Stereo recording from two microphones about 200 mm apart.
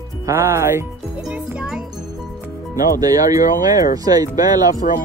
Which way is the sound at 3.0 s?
20° right (ahead or behind).